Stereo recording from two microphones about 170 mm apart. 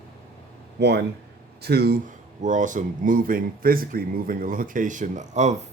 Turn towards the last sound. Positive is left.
turn(degrees=-45)  # may be behind; listen again after turning